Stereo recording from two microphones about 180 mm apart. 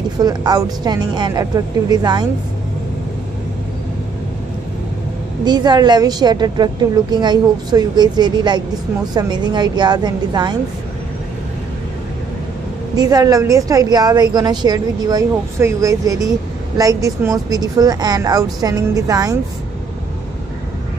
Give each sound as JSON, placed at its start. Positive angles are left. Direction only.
{"t": 0.2, "sound": "a woman's voice", "side_deg": -20}
{"t": 5.4, "sound": "a woman's voice", "side_deg": -25}
{"t": 12.9, "sound": "a woman's voice", "side_deg": -20}